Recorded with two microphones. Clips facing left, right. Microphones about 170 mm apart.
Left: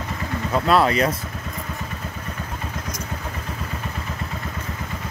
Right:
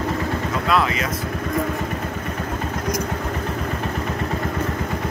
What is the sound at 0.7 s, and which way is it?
Speech, 35° left (ahead or behind).